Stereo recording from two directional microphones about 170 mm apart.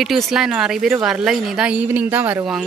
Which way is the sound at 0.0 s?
Centre (ahead or behind).